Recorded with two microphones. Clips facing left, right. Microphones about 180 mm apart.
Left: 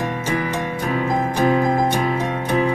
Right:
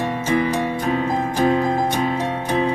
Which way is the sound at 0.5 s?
30° right (ahead or behind).